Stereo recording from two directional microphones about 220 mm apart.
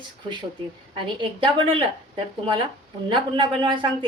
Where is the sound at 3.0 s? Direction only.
20° right (ahead or behind).